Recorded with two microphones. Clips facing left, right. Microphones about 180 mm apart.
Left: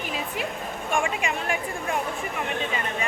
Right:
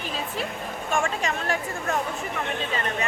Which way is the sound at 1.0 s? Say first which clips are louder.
Even; 15° left (ahead or behind).